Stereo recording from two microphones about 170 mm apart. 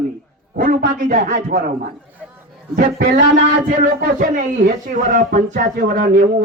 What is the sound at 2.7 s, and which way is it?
Speech, 50° right (ahead or behind).